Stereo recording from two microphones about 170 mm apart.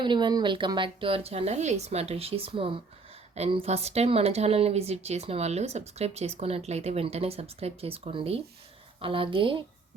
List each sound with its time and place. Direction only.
0.0 s speech: 25° right (ahead or behind)